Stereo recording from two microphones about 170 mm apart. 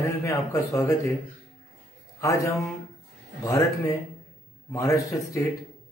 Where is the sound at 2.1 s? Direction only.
20° left (ahead or behind).